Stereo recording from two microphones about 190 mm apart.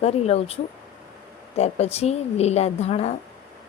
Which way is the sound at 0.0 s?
35° left (ahead or behind).